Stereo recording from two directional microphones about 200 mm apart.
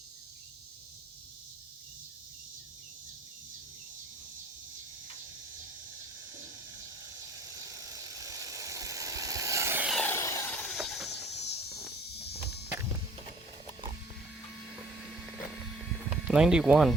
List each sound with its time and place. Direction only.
7.6 s vehicle: 15° right (ahead or behind)
9.9 s a sound: 10° left (ahead or behind)
11.1 s cricket: 55° left (ahead or behind)
14.7 s vehicle: centre (ahead or behind)
16.0 s speech: 5° right (ahead or behind)